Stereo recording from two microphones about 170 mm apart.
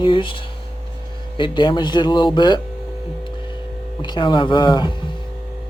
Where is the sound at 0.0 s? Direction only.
30° left (ahead or behind).